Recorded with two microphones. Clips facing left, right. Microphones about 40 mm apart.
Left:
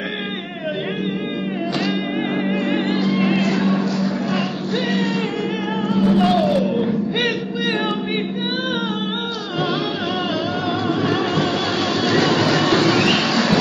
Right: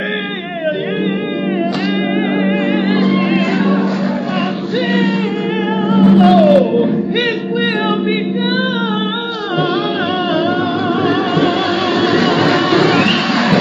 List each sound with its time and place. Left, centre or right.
2.9 s music: right
3.2 s music: centre
3.5 s music: right
5.9 s music: right
6.1 s music: centre
6.4 s music: right
12.1 s music: centre
12.5 s a sound: centre